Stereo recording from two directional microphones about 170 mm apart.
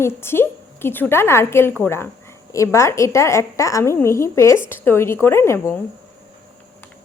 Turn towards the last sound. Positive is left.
turn(degrees=15)  # may be behind; listen again after turning